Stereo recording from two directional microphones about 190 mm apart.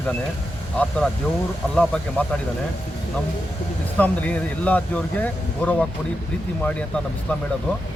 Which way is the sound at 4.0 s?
5° left (ahead or behind).